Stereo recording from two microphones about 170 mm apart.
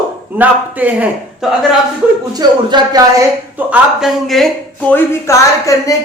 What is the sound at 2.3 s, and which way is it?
Speech, 25° right (ahead or behind).